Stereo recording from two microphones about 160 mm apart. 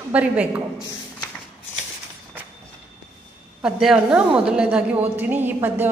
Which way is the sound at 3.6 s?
5° right (ahead or behind).